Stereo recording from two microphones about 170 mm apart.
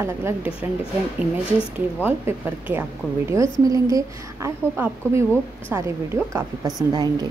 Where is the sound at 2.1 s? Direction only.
10° right (ahead or behind).